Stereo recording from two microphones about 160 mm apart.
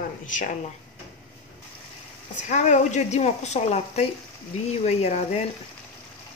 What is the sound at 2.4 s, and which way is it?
A woman's voice, 50° left (ahead or behind).